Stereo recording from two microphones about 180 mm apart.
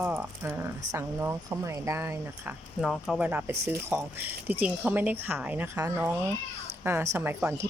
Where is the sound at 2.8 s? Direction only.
Centre (ahead or behind).